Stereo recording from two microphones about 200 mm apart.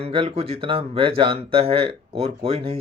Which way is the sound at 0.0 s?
30° right (ahead or behind).